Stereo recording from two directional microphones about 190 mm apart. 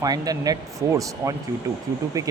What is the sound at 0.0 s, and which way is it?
Speech, 20° right (ahead or behind).